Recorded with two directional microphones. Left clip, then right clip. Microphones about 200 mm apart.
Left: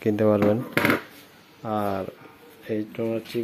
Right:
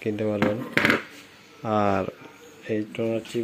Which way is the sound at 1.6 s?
15° right (ahead or behind).